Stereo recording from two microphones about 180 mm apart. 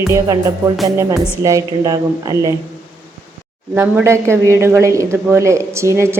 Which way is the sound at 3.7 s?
10° right (ahead or behind).